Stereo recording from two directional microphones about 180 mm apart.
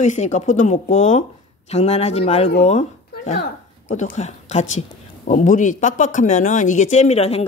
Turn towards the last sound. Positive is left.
turn(degrees=35)  # may be behind; listen again after turning